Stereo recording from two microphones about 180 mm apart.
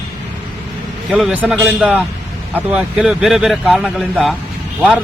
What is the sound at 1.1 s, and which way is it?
Speech, 5° right (ahead or behind).